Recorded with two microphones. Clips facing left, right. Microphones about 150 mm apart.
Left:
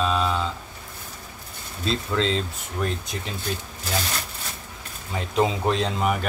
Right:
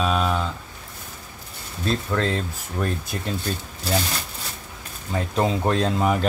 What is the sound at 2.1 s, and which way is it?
Speech, 20° left (ahead or behind).